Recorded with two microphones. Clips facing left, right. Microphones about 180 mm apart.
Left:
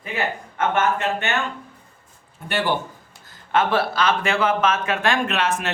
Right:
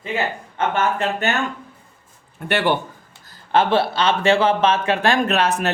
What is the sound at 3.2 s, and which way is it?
Speech, 35° right (ahead or behind).